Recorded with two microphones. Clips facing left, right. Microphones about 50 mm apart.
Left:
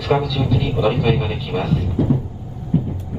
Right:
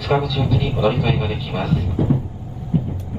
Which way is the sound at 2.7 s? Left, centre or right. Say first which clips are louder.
Left 2 dB; centre.